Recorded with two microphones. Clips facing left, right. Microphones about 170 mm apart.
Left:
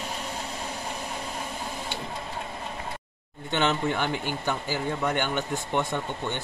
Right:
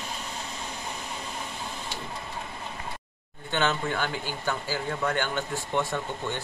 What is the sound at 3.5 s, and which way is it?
Speech, 20° left (ahead or behind).